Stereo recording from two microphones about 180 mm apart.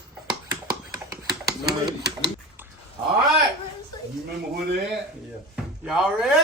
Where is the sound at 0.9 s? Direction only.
20° right (ahead or behind).